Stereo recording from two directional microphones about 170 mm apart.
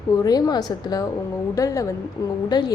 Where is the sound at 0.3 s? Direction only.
20° left (ahead or behind).